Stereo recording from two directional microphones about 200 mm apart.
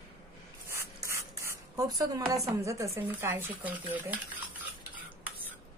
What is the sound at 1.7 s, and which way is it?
Speech, 20° right (ahead or behind).